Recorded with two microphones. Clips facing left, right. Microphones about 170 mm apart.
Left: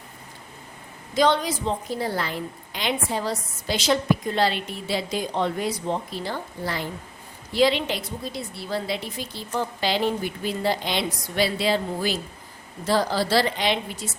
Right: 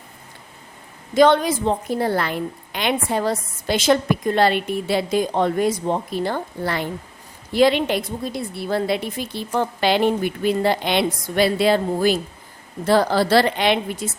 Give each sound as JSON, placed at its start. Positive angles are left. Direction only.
{"t": 1.1, "sound": "a woman's voice", "side_deg": -55}